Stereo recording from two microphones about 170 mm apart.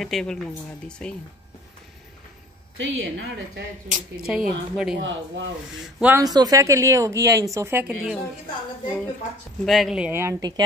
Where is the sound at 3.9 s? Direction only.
5° right (ahead or behind).